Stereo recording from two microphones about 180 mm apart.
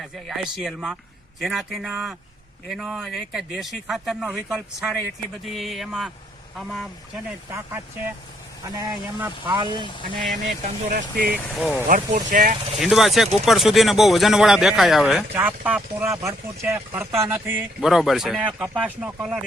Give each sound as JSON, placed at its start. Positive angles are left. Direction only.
{"t": 0.0, "sound": "speech", "side_deg": 0}
{"t": 8.8, "sound": "speech", "side_deg": -20}
{"t": 10.6, "sound": "speech", "side_deg": -50}
{"t": 11.4, "sound": "speech", "side_deg": 0}
{"t": 11.9, "sound": "speech", "side_deg": -45}
{"t": 12.8, "sound": "speech", "side_deg": 0}
{"t": 17.7, "sound": "speech", "side_deg": 0}